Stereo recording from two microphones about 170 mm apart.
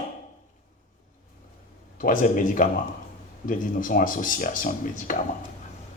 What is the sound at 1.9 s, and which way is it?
Speech, 55° left (ahead or behind).